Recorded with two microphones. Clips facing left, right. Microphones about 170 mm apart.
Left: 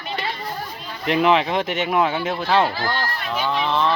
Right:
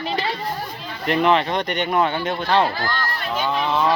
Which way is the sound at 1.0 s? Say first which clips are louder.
Even; centre (ahead or behind).